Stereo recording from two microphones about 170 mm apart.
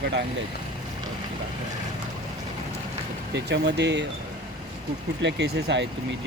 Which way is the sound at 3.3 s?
90° right.